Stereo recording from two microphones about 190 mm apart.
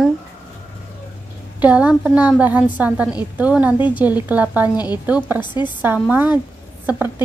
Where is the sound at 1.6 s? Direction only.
5° right (ahead or behind).